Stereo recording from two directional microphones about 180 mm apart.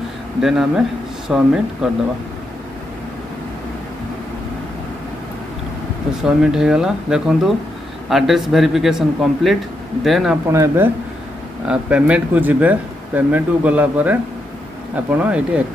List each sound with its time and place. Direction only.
0.4 s a man's voice: 5° right (ahead or behind)
6.2 s a man's voice: 5° right (ahead or behind)
10.5 s speech: 15° right (ahead or behind)